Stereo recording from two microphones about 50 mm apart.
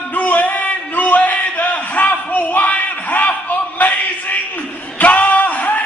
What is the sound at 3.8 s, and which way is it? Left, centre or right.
Speech, left.